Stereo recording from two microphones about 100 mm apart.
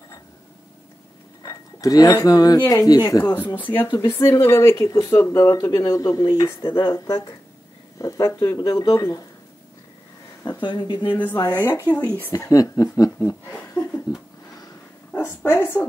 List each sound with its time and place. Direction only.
1.4 s speech: 35° left (ahead or behind)
3.5 s speech: 20° left (ahead or behind)
4.1 s speech: 30° left (ahead or behind)
5.7 s speech: 40° left (ahead or behind)
6.6 s speech: 55° left (ahead or behind)
8.0 s speech: 35° left (ahead or behind)
10.6 s speech: 50° left (ahead or behind)
11.3 s speech: 40° left (ahead or behind)
11.6 s speech: 20° left (ahead or behind)
12.4 s speech: 35° left (ahead or behind)
15.1 s speech: 25° left (ahead or behind)